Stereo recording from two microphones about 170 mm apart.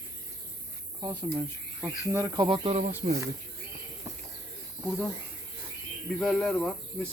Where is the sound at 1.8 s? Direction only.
20° right (ahead or behind); by 2.8 s 35° right (ahead or behind).